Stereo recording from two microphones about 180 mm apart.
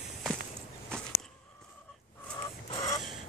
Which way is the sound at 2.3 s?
20° left (ahead or behind).